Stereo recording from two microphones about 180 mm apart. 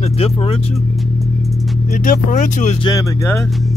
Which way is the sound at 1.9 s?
45° left (ahead or behind).